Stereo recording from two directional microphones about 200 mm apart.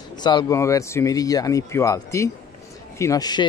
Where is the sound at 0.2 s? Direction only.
20° left (ahead or behind).